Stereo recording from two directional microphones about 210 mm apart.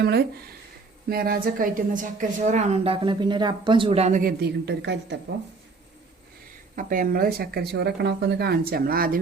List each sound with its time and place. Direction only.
0.0 s a woman's voice: 50° right (ahead or behind)
6.7 s speech: 40° right (ahead or behind)